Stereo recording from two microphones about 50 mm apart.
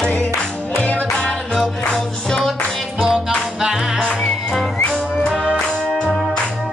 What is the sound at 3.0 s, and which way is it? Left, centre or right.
Music, centre.